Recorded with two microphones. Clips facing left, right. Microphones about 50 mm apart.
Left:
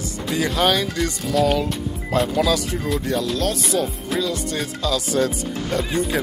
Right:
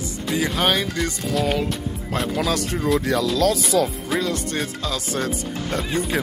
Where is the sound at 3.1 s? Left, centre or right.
Right.